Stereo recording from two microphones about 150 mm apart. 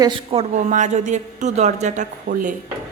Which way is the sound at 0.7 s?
55° right (ahead or behind).